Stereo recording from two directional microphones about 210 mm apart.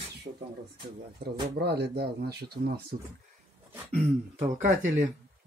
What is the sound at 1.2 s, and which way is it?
Speech, 50° right (ahead or behind).